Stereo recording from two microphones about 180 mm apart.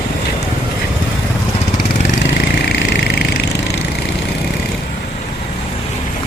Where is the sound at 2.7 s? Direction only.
70° left (ahead or behind).